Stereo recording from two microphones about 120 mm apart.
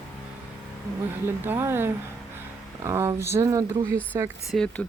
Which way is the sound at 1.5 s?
20° right (ahead or behind).